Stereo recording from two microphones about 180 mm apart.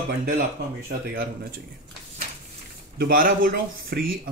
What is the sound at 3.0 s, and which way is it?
Speech, 50° right (ahead or behind).